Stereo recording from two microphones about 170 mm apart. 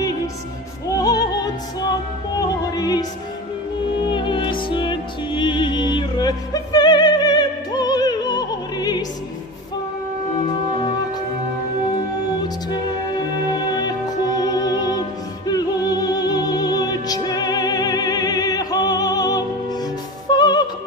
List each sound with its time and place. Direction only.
0.9 s opera: 20° left (ahead or behind)
2.7 s opera: 20° left (ahead or behind)
4.1 s music: 30° left (ahead or behind)
13.5 s music: 25° left (ahead or behind)